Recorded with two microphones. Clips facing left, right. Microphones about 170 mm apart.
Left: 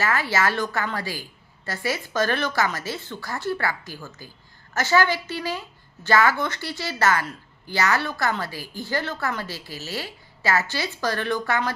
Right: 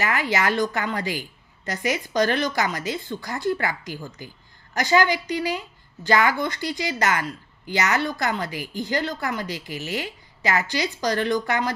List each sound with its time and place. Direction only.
0.0 s a woman's voice: 15° right (ahead or behind)